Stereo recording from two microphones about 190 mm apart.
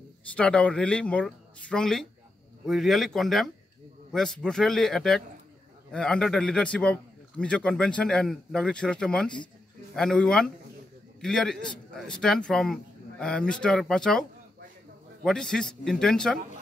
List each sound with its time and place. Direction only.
0.4 s speech: 5° left (ahead or behind)
15.2 s speech: 5° left (ahead or behind)